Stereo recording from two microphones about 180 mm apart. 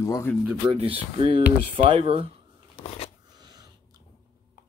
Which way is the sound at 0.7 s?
35° right (ahead or behind).